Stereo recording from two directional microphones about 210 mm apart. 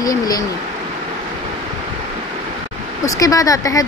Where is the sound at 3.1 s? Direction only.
15° left (ahead or behind).